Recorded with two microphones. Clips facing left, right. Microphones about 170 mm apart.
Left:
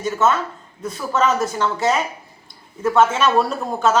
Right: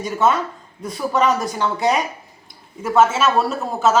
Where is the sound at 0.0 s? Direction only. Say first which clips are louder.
Even; 10° right (ahead or behind).